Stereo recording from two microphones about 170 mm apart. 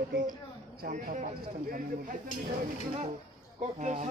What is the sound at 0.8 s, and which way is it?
Speech, 55° right (ahead or behind).